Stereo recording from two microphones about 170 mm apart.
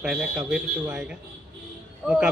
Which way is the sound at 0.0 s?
5° right (ahead or behind).